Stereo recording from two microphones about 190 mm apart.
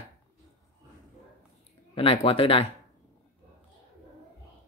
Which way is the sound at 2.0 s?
30° left (ahead or behind).